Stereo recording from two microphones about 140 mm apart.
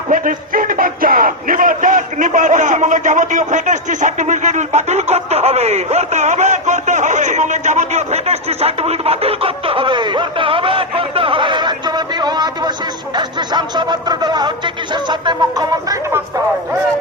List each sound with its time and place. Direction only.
0.1 s speech: 80° right; by 12.7 s 30° right (ahead or behind)
13.1 s music: 30° right (ahead or behind)